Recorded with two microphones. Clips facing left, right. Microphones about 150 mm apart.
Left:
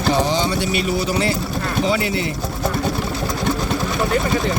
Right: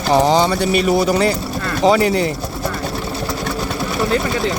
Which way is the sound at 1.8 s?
40° right (ahead or behind).